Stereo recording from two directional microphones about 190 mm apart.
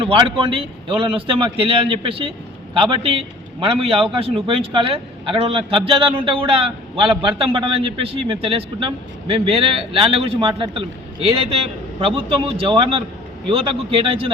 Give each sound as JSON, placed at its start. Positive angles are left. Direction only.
{"t": 0.1, "sound": "a man's voice", "side_deg": -25}
{"t": 12.6, "sound": "a man's voice", "side_deg": -30}